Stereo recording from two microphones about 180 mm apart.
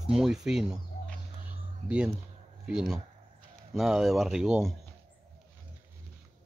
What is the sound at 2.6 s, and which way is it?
Speech, 5° right (ahead or behind).